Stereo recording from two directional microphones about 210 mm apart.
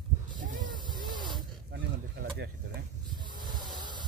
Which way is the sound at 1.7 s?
50° right (ahead or behind).